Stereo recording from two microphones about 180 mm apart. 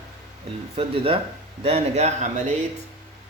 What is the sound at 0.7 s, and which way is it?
Speech, 30° right (ahead or behind).